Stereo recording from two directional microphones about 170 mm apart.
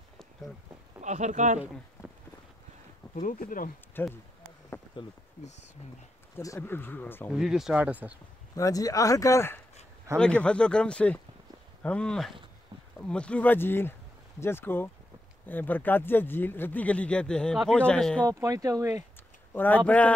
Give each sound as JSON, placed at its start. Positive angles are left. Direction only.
{"t": 1.0, "sound": "speech", "side_deg": -45}
{"t": 3.2, "sound": "speech", "side_deg": 55}
{"t": 4.0, "sound": "speech", "side_deg": 10}
{"t": 5.0, "sound": "speech", "side_deg": 30}
{"t": 6.3, "sound": "speech", "side_deg": 15}
{"t": 7.3, "sound": "speech", "side_deg": 0}
{"t": 8.5, "sound": "speech", "side_deg": 20}
{"t": 18.2, "sound": "speech", "side_deg": -20}
{"t": 19.5, "sound": "a man's voice", "side_deg": 10}